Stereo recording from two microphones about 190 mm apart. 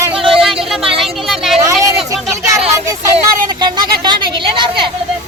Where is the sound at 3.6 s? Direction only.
25° right (ahead or behind).